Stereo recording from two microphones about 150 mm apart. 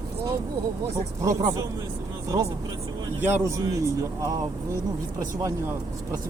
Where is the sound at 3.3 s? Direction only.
20° right (ahead or behind).